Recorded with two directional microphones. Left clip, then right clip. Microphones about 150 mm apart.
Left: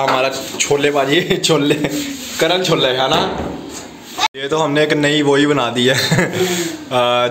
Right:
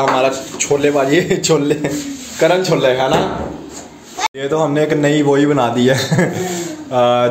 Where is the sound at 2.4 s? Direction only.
10° right (ahead or behind).